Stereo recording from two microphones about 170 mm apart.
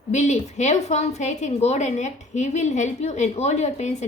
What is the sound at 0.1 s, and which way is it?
A woman's voice, 45° left (ahead or behind).